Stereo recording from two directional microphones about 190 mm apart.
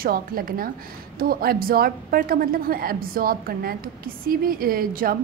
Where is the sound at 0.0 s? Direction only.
50° right (ahead or behind).